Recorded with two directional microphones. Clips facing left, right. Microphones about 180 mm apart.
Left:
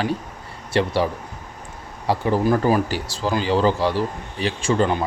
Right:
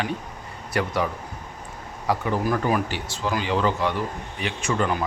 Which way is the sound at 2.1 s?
30° left (ahead or behind).